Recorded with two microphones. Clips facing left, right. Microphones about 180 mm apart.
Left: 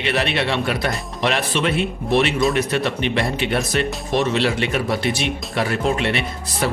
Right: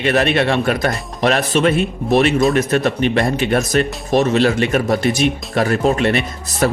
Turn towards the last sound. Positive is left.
turn(degrees=-45)  # may be behind; listen again after turning